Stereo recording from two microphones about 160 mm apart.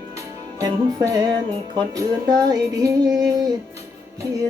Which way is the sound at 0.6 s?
25° right (ahead or behind).